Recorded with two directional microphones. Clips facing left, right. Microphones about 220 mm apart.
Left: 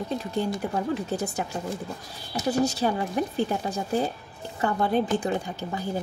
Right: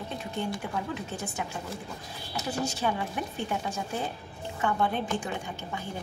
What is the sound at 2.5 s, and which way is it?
A woman's voice, 40° left (ahead or behind).